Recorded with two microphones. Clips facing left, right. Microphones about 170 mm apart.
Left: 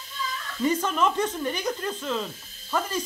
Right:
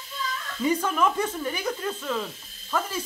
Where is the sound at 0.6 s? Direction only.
10° right (ahead or behind).